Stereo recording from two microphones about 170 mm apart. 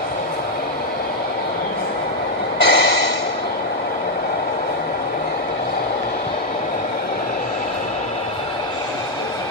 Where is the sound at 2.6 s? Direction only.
80° left.